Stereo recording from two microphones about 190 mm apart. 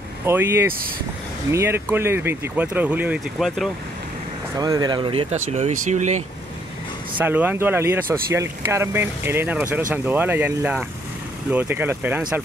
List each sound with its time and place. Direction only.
0.2 s speech: 10° right (ahead or behind)
4.6 s speech: 20° right (ahead or behind); by 6.2 s 40° right (ahead or behind)
7.2 s speech: 10° right (ahead or behind)